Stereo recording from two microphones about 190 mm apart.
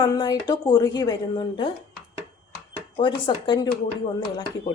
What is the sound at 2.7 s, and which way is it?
Speech, 25° left (ahead or behind).